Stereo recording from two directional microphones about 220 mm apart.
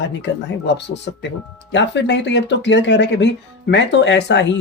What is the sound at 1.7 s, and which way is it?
Speech, 55° left (ahead or behind).